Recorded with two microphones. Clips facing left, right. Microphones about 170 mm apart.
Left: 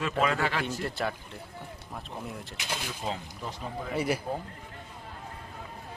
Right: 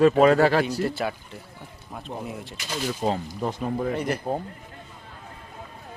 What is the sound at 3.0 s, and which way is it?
Speech, 45° right (ahead or behind).